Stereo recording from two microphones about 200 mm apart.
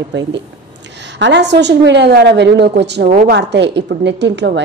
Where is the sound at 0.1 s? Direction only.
65° right (ahead or behind).